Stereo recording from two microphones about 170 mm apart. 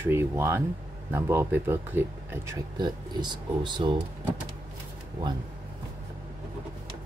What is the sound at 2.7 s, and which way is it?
Speech, 25° right (ahead or behind).